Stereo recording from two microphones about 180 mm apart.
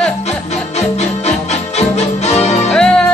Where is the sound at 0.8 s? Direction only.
40° left (ahead or behind).